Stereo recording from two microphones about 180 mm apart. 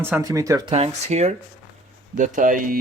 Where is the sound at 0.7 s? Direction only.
35° right (ahead or behind).